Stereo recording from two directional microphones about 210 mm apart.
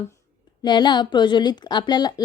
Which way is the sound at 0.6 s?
20° left (ahead or behind).